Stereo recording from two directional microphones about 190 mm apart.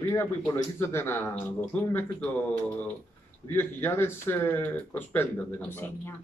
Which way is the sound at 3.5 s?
10° left (ahead or behind).